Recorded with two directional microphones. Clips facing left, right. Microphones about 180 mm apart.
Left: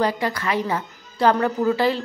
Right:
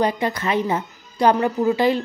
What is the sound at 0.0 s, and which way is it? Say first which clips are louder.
Speech: right 1 dB; 20° right (ahead or behind).